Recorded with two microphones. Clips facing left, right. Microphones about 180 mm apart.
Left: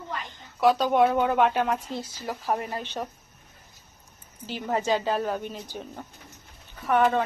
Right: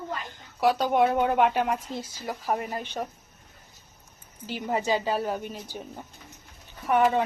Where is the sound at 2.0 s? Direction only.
45° right (ahead or behind).